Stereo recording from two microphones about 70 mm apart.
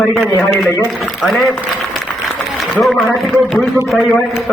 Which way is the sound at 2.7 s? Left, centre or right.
Centre.